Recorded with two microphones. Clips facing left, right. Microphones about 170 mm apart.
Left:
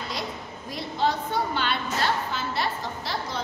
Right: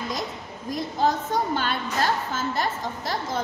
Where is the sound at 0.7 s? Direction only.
45° right (ahead or behind).